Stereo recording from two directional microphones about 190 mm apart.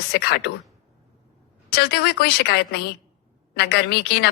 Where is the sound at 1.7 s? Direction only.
60° left (ahead or behind).